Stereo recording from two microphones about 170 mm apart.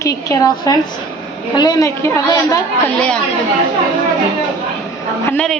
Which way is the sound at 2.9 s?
5° left (ahead or behind).